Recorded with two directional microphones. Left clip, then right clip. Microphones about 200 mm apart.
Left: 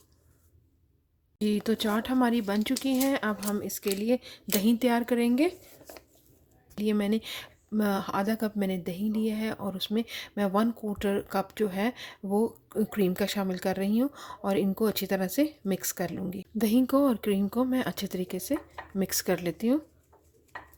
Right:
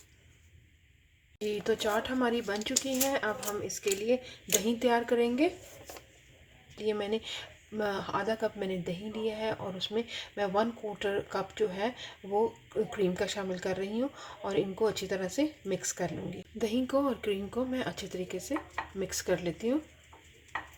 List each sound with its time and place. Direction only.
1.4 s speech: 50° left (ahead or behind)
6.7 s speech: 50° left (ahead or behind)